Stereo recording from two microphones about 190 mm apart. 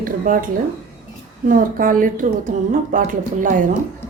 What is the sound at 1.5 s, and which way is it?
Speech, 45° right (ahead or behind).